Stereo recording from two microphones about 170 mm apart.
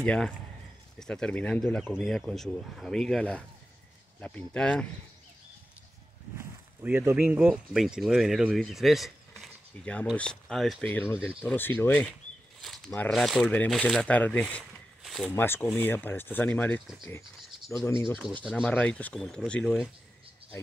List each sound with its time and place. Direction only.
0.0 s speech: 5° left (ahead or behind)
6.8 s speech: 15° right (ahead or behind); by 12.1 s 10° left (ahead or behind)
12.6 s speech: centre (ahead or behind)
15.0 s a sound: centre (ahead or behind)
15.3 s speech: 10° left (ahead or behind)
17.8 s speech: 15° left (ahead or behind)
18.4 s speech: 5° left (ahead or behind)